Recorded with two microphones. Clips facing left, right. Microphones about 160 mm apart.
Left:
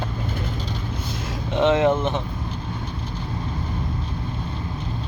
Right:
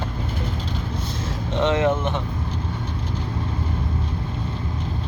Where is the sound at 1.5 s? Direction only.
20° left (ahead or behind).